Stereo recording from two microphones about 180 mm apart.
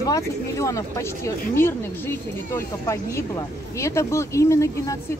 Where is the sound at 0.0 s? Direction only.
20° left (ahead or behind).